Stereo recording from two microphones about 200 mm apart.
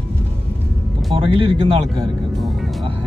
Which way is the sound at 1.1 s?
25° right (ahead or behind).